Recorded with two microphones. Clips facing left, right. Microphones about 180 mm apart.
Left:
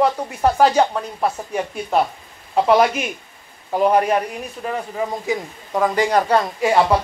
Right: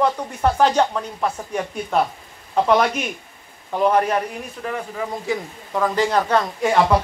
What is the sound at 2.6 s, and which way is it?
Speech, 10° left (ahead or behind).